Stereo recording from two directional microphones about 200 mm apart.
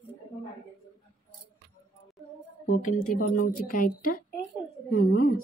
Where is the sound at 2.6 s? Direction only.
45° left (ahead or behind).